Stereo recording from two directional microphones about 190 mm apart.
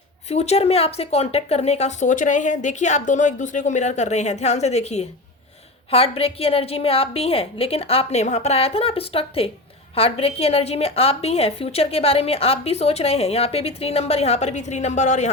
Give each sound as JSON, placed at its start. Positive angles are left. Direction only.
{"t": 0.3, "sound": "a woman's voice", "side_deg": 35}